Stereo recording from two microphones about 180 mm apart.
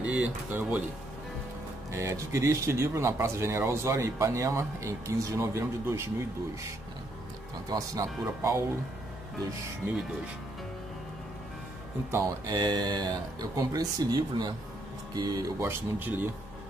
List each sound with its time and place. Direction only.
0.0 s speech: 5° right (ahead or behind)
1.9 s speech: 15° right (ahead or behind)
7.7 s speech: 20° right (ahead or behind)
12.1 s speech: 20° right (ahead or behind)